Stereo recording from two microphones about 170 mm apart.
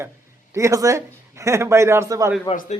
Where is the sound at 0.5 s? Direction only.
20° right (ahead or behind).